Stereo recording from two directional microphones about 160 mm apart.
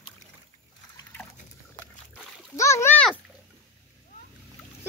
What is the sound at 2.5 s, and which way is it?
Splash, 20° left (ahead or behind).